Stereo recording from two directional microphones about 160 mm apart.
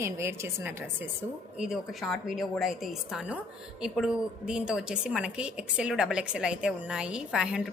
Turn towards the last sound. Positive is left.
turn(degrees=-5)  # may be behind; listen again after turning